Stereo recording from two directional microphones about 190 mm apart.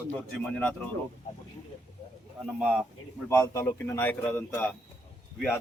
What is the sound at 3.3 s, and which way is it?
A man's voice, 10° left (ahead or behind).